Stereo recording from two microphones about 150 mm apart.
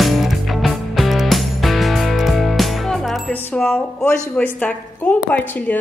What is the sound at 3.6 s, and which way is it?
A woman's voice, 10° left (ahead or behind).